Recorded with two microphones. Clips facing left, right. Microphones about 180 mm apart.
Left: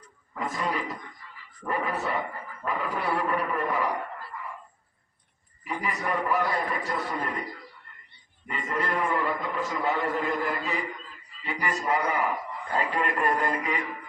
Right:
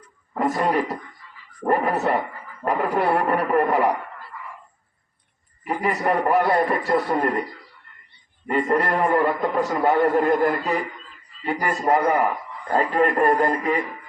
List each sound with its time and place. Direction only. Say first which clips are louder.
0.3 s a man's voice: right 9 dB; 60° right (ahead or behind)
5.6 s speech: right 8 dB; 65° right (ahead or behind)
6.1 s speech: right 8 dB; 50° right (ahead or behind); by 7.0 s 70° right (ahead or behind)
7.1 s a man's voice: right 10 dB; 50° right (ahead or behind)
8.4 s a man's voice: right 10 dB; 55° right (ahead or behind)